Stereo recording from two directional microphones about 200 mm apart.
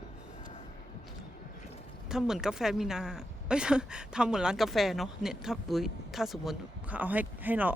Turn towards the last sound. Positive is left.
turn(degrees=-10)  # may be behind; listen again after turning